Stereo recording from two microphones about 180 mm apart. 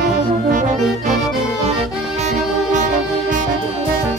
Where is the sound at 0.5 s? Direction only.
45° right (ahead or behind).